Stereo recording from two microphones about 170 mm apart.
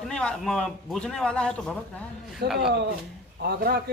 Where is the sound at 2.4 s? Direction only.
70° right (ahead or behind).